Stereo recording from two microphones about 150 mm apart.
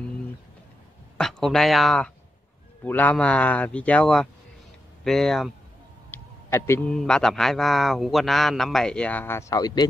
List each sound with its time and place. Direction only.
1.1 s a man's voice: 5° left (ahead or behind)
6.1 s a sound: 15° left (ahead or behind)
6.9 s a man's voice: 5° left (ahead or behind); by 9.8 s 25° left (ahead or behind)